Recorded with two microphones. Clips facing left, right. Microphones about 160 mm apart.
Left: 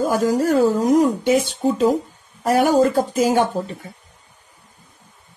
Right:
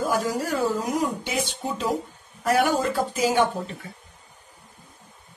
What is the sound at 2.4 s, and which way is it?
Speech, 45° left (ahead or behind).